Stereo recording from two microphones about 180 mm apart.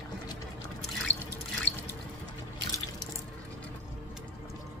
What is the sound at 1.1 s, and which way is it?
Drip, 15° right (ahead or behind).